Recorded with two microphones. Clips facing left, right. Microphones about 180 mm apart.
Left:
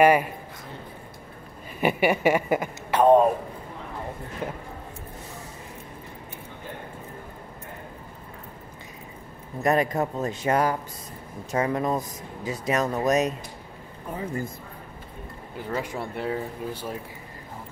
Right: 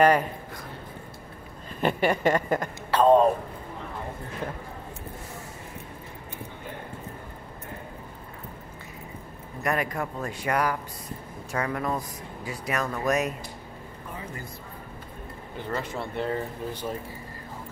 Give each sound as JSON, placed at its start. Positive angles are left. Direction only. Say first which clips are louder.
{"t": 0.0, "sound": "speech", "louder": "left 2 dB", "side_deg": 10}
{"t": 1.8, "sound": "speech", "louder": "left 2 dB", "side_deg": 10}
{"t": 9.6, "sound": "speech", "louder": "left 5 dB", "side_deg": 25}
{"t": 15.5, "sound": "speech", "louder": "left 1 dB", "side_deg": 10}